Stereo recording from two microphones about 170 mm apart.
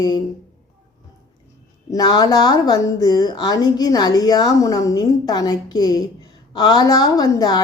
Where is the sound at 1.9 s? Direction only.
25° left (ahead or behind).